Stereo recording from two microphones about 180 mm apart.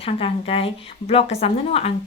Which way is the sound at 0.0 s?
30° left (ahead or behind).